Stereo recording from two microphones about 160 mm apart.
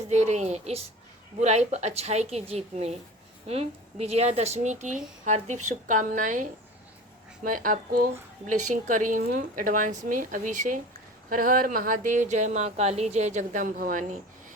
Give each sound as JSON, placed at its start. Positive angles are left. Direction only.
{"t": 0.1, "sound": "a woman's voice", "side_deg": -45}